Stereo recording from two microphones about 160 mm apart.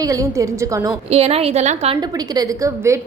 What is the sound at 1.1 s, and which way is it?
Speech, 40° right (ahead or behind).